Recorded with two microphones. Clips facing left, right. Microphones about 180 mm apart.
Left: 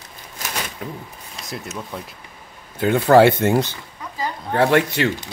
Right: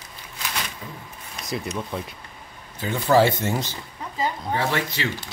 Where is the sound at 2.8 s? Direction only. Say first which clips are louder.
Left 6 dB; 60° left (ahead or behind).